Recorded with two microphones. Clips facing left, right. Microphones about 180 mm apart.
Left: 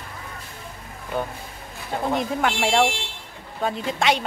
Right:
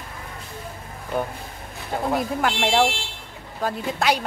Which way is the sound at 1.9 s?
Centre (ahead or behind).